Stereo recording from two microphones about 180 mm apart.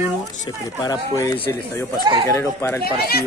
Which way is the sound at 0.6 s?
20° left (ahead or behind).